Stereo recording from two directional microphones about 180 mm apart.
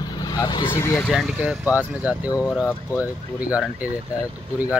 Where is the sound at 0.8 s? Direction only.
15° left (ahead or behind).